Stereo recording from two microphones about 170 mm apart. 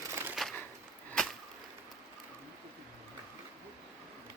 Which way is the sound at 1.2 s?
5° left (ahead or behind).